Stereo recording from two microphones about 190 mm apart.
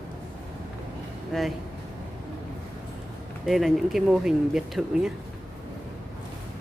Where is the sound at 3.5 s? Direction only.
Centre (ahead or behind).